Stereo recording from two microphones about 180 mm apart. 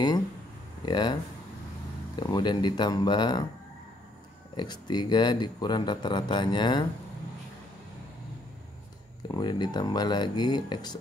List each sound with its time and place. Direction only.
0.8 s a man's voice: 25° left (ahead or behind)
2.1 s a man's voice: 25° left (ahead or behind)
4.6 s a man's voice: 25° left (ahead or behind)
9.3 s a man's voice: 25° left (ahead or behind)